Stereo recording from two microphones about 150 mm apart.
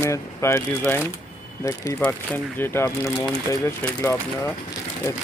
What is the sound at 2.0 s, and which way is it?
Speech, 10° left (ahead or behind).